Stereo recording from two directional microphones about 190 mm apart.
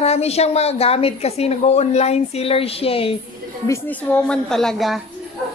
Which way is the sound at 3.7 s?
10° left (ahead or behind).